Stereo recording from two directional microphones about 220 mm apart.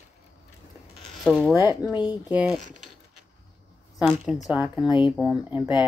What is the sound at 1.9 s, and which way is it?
Speech, 20° left (ahead or behind).